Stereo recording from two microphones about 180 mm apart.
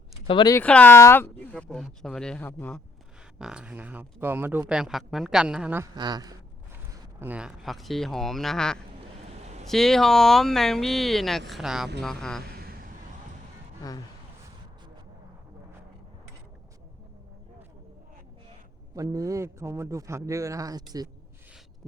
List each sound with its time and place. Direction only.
0.3 s speech: 25° left (ahead or behind)
0.5 s speech: 10° left (ahead or behind)
3.3 s a man's voice: 5° right (ahead or behind)
5.9 s a woman's voice: 25° right (ahead or behind)
7.2 s speech: 10° right (ahead or behind)
18.9 s a man's voice: 20° right (ahead or behind)